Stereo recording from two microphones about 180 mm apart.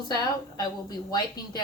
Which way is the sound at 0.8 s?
20° left (ahead or behind).